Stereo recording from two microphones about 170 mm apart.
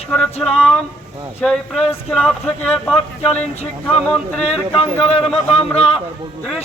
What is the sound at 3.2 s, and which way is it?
Speech, 40° left (ahead or behind).